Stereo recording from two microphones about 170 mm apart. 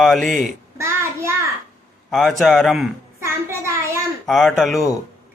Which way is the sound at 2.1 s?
Centre (ahead or behind).